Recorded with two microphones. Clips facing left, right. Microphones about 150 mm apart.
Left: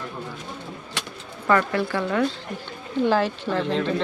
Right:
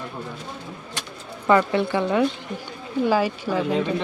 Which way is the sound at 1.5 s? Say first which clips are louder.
Right 3 dB; 20° right (ahead or behind).